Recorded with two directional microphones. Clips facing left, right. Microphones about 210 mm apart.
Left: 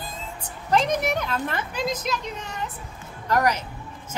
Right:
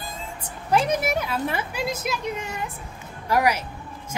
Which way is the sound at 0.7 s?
10° right (ahead or behind).